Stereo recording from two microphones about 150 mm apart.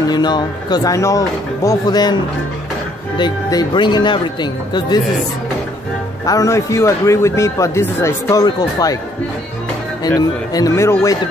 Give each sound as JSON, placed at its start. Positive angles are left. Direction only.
{"t": 0.1, "sound": "a man's voice", "side_deg": 30}
{"t": 6.2, "sound": "a man's voice", "side_deg": 20}
{"t": 10.0, "sound": "a man's voice", "side_deg": 25}